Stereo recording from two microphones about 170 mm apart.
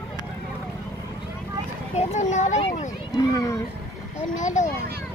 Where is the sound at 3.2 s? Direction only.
20° left (ahead or behind).